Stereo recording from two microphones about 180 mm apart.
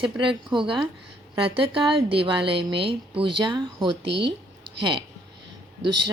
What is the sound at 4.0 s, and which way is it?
Speech, 70° right (ahead or behind).